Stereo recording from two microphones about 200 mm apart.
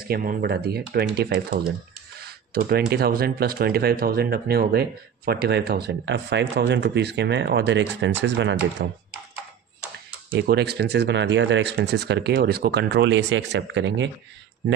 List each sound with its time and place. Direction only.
0.1 s speech: 45° right (ahead or behind)
2.1 s a sound: 50° right (ahead or behind)
2.9 s speech: 50° right (ahead or behind)
8.8 s speech: 50° right (ahead or behind)
10.4 s speech: 55° right (ahead or behind)